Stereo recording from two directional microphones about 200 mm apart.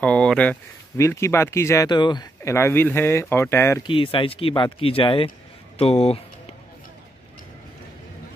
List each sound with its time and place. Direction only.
0.0 s speech: 5° left (ahead or behind)
3.8 s speech: 25° left (ahead or behind)